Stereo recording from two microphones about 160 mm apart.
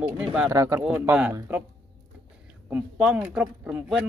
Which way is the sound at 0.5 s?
20° right (ahead or behind).